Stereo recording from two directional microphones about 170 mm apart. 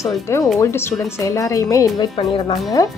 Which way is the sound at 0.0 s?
20° left (ahead or behind).